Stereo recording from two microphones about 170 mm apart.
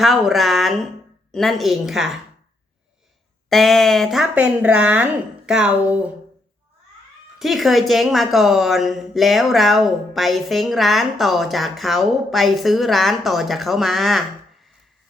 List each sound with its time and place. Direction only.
0.0 s a woman's voice: centre (ahead or behind)
3.5 s a woman's voice: centre (ahead or behind)
7.3 s a woman's voice: centre (ahead or behind)